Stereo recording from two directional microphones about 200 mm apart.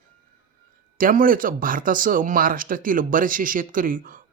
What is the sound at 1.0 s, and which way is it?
Speech, 45° right (ahead or behind).